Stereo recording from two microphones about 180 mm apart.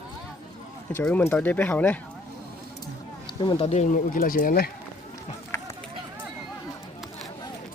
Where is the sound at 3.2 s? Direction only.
25° left (ahead or behind); by 4.7 s 50° left (ahead or behind).